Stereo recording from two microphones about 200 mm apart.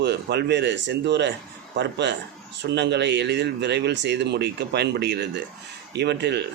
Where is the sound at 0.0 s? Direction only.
55° right (ahead or behind).